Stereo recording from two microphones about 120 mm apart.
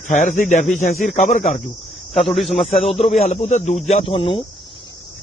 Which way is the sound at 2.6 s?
65° left (ahead or behind).